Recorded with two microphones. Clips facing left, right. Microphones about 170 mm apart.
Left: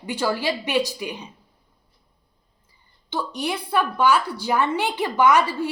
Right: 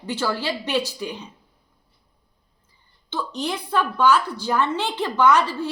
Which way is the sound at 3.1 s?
10° left (ahead or behind).